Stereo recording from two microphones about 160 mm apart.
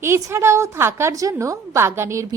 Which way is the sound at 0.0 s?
15° right (ahead or behind).